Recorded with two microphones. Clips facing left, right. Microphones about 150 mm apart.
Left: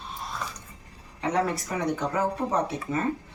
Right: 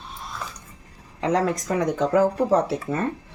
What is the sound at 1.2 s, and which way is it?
Speech, 90° right.